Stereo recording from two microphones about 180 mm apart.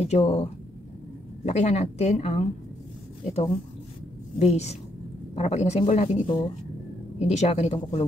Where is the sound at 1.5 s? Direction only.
40° left (ahead or behind).